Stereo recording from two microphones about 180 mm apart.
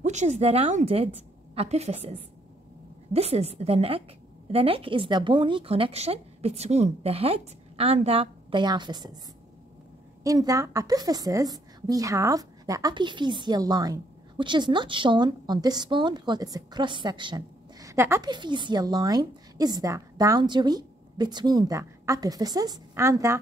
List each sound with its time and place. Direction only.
0.0 s speech: 40° right (ahead or behind); by 9.1 s 25° right (ahead or behind)
10.2 s a woman's voice: 20° right (ahead or behind)